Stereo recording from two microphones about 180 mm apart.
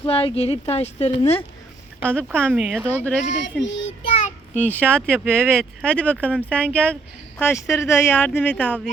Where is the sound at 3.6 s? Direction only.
90° left.